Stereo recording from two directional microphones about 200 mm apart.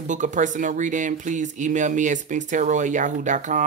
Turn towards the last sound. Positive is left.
turn(degrees=-40)  # may be behind; listen again after turning